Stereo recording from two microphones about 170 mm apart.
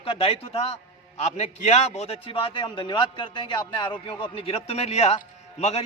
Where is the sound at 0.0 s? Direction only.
35° left (ahead or behind).